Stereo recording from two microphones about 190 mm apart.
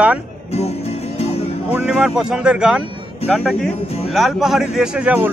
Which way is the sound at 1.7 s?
5° right (ahead or behind).